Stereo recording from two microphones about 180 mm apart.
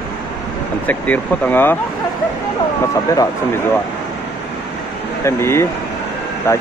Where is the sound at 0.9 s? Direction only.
10° left (ahead or behind).